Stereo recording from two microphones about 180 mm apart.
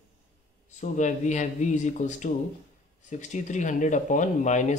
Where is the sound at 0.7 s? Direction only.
45° left (ahead or behind).